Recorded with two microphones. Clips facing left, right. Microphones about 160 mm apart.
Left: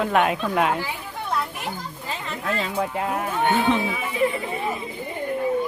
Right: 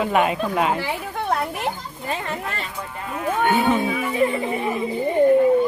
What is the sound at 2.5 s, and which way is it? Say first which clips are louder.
Speech: left 6 dB; 90° left.